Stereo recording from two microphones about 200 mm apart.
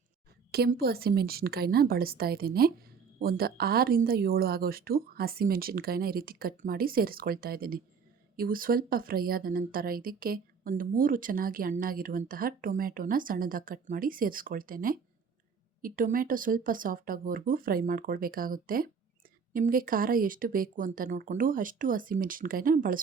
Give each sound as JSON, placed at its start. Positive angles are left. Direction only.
{"t": 0.5, "sound": "a woman's voice", "side_deg": -50}